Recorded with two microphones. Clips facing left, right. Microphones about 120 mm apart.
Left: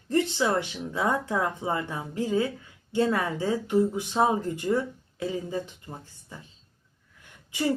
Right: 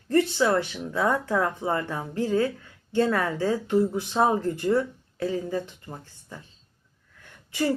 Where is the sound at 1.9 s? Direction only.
15° left (ahead or behind).